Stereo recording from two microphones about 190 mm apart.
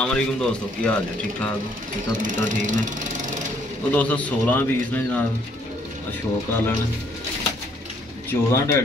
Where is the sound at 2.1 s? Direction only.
40° right (ahead or behind).